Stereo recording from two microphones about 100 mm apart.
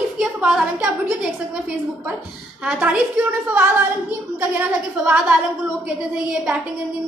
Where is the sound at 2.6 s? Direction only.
15° right (ahead or behind).